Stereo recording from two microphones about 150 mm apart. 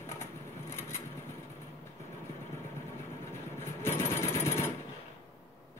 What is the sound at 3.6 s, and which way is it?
Jackhammer, 15° left (ahead or behind).